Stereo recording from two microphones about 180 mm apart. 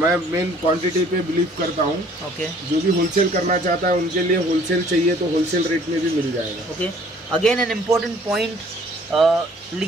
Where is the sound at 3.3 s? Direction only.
45° right (ahead or behind).